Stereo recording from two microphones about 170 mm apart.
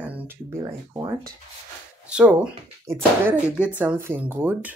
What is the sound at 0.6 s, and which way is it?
Speech, 20° right (ahead or behind).